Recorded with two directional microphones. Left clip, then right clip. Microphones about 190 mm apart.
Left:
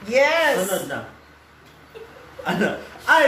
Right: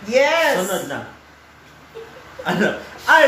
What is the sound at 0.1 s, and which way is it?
Speech, 10° left (ahead or behind).